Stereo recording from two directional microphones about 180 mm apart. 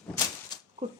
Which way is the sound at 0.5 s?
25° left (ahead or behind).